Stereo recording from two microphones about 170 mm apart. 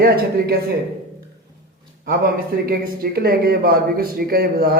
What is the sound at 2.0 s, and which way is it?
Speech, 65° right (ahead or behind).